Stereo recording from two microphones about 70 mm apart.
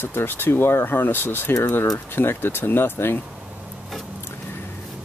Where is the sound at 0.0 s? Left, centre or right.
Left.